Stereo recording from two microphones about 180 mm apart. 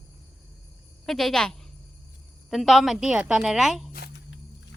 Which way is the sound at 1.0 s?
Centre (ahead or behind).